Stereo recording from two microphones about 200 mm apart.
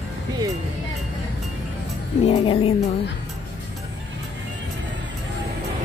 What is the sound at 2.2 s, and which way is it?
Music, 30° left (ahead or behind).